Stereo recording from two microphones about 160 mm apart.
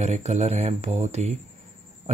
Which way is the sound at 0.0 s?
45° right (ahead or behind).